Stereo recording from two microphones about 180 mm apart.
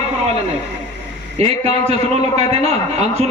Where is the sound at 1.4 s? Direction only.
35° right (ahead or behind).